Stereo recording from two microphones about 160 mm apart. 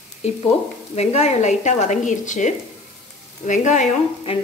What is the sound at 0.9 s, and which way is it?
Speech, 40° left (ahead or behind).